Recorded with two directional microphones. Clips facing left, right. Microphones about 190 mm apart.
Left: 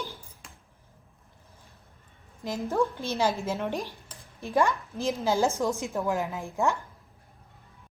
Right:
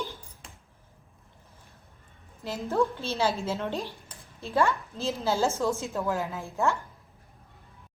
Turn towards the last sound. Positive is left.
turn(degrees=15)  # may be behind; listen again after turning